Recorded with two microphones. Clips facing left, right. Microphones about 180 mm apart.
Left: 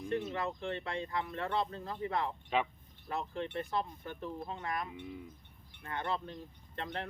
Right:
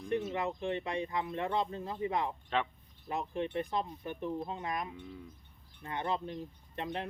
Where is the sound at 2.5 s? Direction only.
10° left (ahead or behind).